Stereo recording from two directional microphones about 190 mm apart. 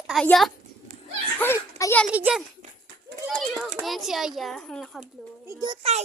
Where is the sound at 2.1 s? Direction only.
5° right (ahead or behind).